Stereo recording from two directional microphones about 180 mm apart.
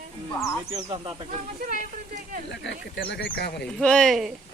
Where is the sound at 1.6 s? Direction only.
50° right (ahead or behind).